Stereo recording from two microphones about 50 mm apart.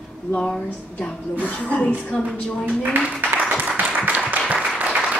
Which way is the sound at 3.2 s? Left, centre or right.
Right.